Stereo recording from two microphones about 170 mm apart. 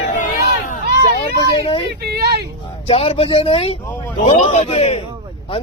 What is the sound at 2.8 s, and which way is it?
Speech, 35° left (ahead or behind).